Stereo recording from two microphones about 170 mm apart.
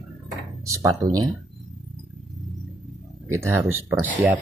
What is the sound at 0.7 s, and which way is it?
Speech, 20° right (ahead or behind).